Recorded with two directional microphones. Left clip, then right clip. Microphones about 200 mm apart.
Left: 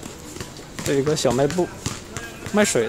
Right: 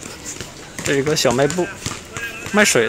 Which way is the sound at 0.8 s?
5° left (ahead or behind).